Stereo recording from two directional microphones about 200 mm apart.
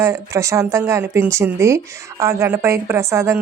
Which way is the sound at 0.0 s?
15° right (ahead or behind).